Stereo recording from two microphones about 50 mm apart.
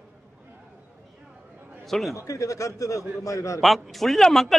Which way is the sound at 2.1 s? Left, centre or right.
Left.